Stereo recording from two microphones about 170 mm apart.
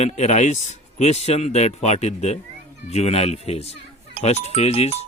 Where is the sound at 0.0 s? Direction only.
40° left (ahead or behind).